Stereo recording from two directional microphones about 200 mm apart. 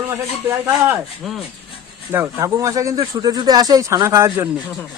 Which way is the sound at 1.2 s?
Centre (ahead or behind).